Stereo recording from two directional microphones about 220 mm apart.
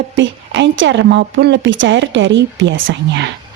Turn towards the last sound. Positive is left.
turn(degrees=-55)  # may be behind; listen again after turning